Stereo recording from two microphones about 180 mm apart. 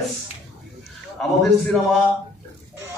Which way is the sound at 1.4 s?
5° left (ahead or behind).